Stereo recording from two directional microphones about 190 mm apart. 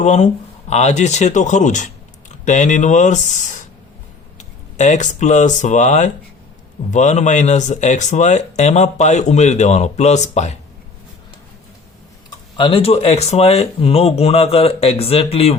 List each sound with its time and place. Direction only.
0.0 s speech: 35° left (ahead or behind)
12.5 s speech: 25° left (ahead or behind)